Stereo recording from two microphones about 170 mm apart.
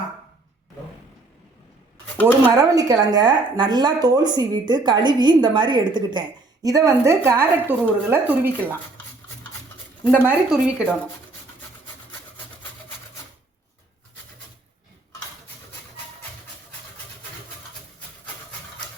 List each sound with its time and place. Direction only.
2.2 s speech: 20° right (ahead or behind)
10.1 s a woman's voice: 5° right (ahead or behind)